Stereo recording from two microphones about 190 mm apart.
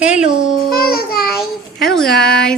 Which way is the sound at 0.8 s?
50° left (ahead or behind).